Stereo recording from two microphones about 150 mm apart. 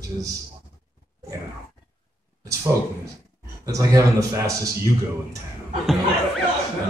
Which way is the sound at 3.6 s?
20° right (ahead or behind).